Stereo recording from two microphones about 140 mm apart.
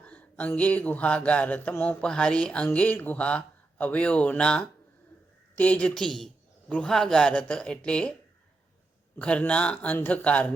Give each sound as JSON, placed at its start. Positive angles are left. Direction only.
{"t": 0.0, "sound": "speech", "side_deg": 10}
{"t": 9.1, "sound": "speech", "side_deg": 10}